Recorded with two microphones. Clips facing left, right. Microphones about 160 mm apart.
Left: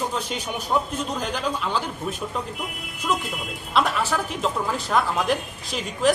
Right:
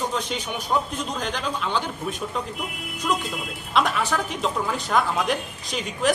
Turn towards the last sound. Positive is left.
turn(degrees=0)  # may be behind; listen again after turning